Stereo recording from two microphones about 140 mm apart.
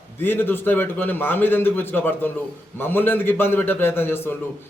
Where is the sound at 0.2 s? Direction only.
15° left (ahead or behind).